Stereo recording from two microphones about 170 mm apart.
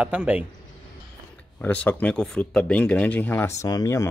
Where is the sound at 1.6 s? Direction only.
10° left (ahead or behind).